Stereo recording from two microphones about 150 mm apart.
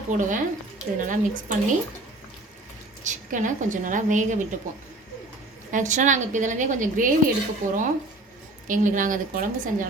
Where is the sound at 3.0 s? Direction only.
55° right (ahead or behind).